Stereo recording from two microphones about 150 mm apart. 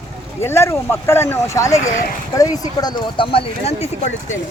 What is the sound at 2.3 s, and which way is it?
Speech, 25° left (ahead or behind).